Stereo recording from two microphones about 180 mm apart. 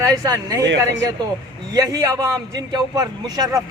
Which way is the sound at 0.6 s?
85° right.